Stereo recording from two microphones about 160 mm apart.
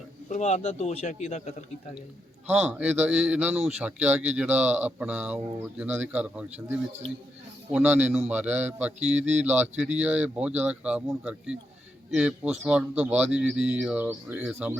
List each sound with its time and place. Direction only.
0.3 s speech: 45° left (ahead or behind)
2.5 s speech: 5° right (ahead or behind)
9.1 s speech: 45° right (ahead or behind)
9.4 s speech: 10° right (ahead or behind)